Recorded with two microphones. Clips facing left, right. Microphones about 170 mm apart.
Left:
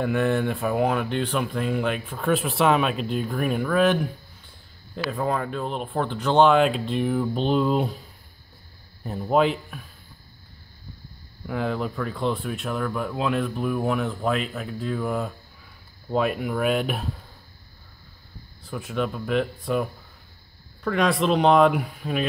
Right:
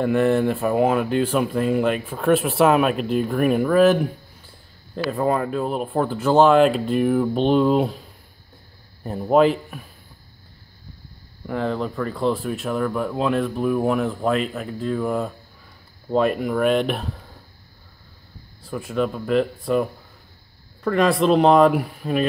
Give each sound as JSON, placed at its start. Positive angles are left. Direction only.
{"t": 0.0, "sound": "speech", "side_deg": 0}
{"t": 5.1, "sound": "speech", "side_deg": -5}
{"t": 9.3, "sound": "speech", "side_deg": 0}
{"t": 11.4, "sound": "speech", "side_deg": 5}
{"t": 18.6, "sound": "speech", "side_deg": 0}